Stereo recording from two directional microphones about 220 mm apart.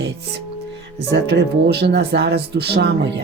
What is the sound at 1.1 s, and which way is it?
Speech, 50° right (ahead or behind).